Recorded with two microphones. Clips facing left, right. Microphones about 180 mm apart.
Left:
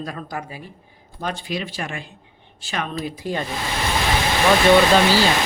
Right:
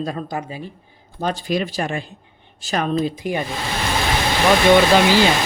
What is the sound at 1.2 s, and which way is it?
Speech, 40° right (ahead or behind).